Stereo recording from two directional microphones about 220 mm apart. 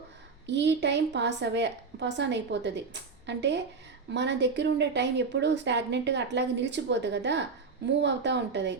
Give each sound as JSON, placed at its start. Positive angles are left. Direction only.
{"t": 0.4, "sound": "speech", "side_deg": -50}